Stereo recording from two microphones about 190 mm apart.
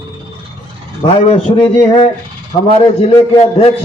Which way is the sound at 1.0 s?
30° left (ahead or behind).